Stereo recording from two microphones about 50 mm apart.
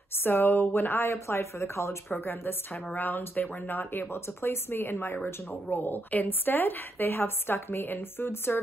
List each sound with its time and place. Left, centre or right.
0.2 s a woman's voice: left
1.1 s speech: left
2.2 s a woman's voice: left